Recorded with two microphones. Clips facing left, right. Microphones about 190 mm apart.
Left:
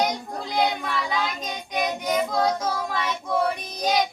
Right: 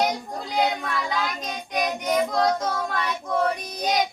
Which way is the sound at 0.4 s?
5° right (ahead or behind).